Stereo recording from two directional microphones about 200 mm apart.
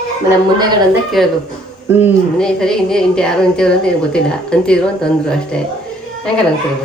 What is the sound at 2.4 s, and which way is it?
A man's voice, 5° left (ahead or behind).